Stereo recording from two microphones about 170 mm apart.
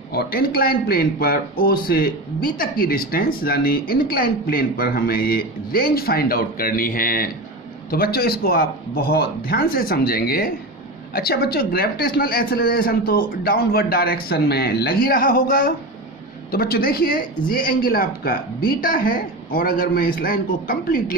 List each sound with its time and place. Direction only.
0.1 s speech: 60° left (ahead or behind)